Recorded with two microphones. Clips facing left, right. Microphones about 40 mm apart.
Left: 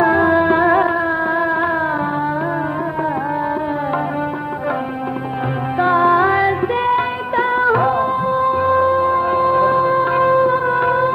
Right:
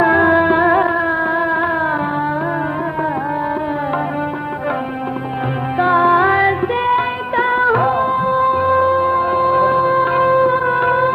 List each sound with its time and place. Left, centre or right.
0.0 s music: right
0.5 s music: centre
5.8 s music: centre